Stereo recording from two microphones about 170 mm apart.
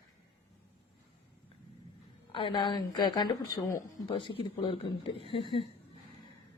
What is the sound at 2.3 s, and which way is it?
Speech, 30° left (ahead or behind).